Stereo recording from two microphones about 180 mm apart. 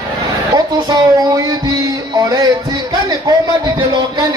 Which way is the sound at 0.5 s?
20° right (ahead or behind).